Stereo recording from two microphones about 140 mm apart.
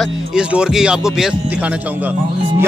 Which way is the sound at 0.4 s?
5° right (ahead or behind).